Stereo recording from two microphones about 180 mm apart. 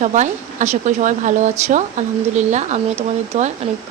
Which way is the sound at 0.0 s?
40° right (ahead or behind).